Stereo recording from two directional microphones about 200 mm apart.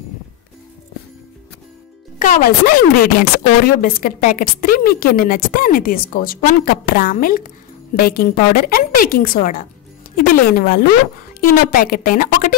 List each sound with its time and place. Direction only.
2.1 s speech: 45° left (ahead or behind)